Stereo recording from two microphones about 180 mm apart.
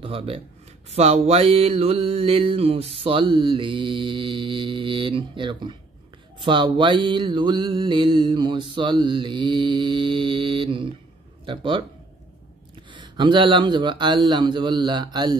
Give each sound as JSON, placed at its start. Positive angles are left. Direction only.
{"t": 0.0, "sound": "speech", "side_deg": -30}
{"t": 0.8, "sound": "mantra", "side_deg": -35}
{"t": 12.9, "sound": "mantra", "side_deg": -25}